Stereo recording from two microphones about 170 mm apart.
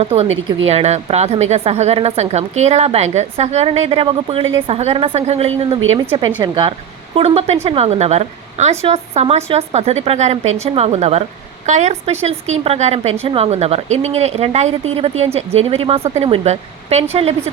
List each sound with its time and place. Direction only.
0.0 s a woman's voice: 35° right (ahead or behind)
7.2 s a woman's voice: 40° right (ahead or behind)